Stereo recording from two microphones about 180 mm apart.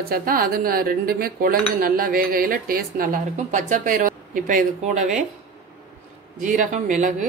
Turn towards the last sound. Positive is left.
turn(degrees=-45)  # may be behind; listen again after turning